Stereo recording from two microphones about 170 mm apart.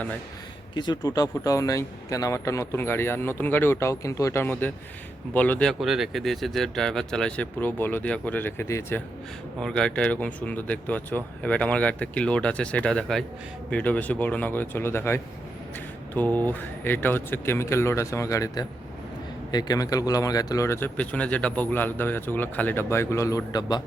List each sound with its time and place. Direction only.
0.7 s a man's voice: 25° left (ahead or behind)
9.6 s a man's voice: 5° left (ahead or behind); by 23.8 s 25° left (ahead or behind)